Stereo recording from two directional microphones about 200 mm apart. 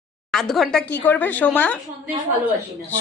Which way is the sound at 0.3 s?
Centre (ahead or behind).